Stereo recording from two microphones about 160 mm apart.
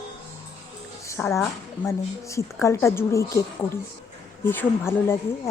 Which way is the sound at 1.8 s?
20° left (ahead or behind).